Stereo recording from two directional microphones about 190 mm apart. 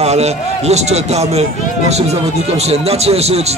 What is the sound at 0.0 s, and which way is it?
A man's voice, 35° right (ahead or behind).